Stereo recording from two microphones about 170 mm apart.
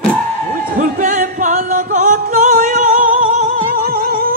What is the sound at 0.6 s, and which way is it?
Music, 50° right (ahead or behind).